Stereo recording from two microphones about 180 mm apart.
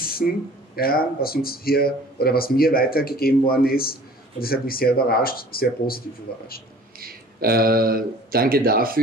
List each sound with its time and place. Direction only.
0.2 s speech: 55° left (ahead or behind)
7.0 s speech: 55° right (ahead or behind)